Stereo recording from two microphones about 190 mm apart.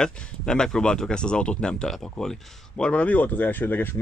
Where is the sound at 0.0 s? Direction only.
5° left (ahead or behind).